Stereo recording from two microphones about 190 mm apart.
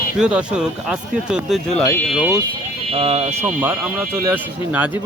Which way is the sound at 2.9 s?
30° right (ahead or behind).